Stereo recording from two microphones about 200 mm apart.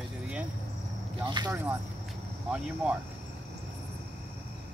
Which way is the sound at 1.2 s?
20° right (ahead or behind).